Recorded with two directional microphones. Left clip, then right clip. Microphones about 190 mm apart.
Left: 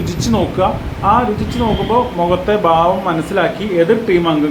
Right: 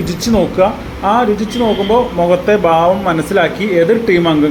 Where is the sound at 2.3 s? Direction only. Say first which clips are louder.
Right 3 dB; 15° right (ahead or behind).